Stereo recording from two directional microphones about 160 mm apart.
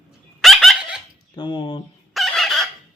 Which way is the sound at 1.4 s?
30° left (ahead or behind).